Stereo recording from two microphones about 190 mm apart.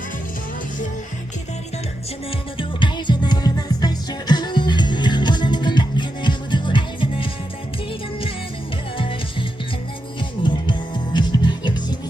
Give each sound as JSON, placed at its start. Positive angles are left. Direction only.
{"t": 2.6, "sound": "music", "side_deg": 25}
{"t": 10.4, "sound": "music", "side_deg": 25}